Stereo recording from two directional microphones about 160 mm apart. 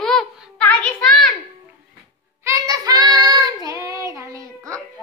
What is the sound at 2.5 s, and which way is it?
Child singing, 20° right (ahead or behind).